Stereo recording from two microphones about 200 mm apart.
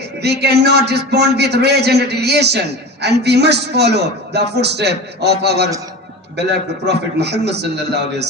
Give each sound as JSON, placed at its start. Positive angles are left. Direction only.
{"t": 0.2, "sound": "a man's voice", "side_deg": -55}
{"t": 6.8, "sound": "a man's voice", "side_deg": -55}